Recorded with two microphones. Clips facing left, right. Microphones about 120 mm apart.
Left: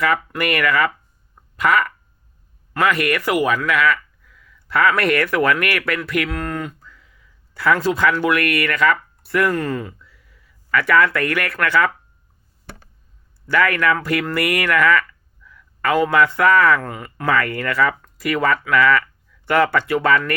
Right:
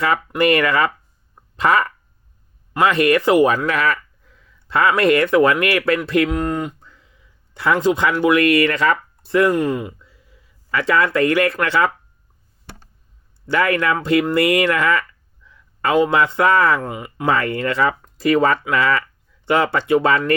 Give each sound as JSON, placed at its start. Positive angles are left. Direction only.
{"t": 0.0, "sound": "a man's voice", "side_deg": -25}
{"t": 13.5, "sound": "a man's voice", "side_deg": -25}